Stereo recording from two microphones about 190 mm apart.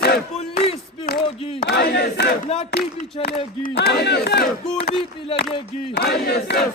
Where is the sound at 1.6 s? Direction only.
60° left (ahead or behind).